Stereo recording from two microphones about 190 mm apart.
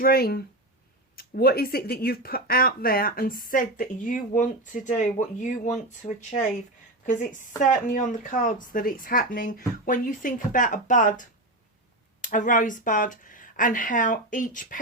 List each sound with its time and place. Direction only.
0.0 s speech: 55° left (ahead or behind)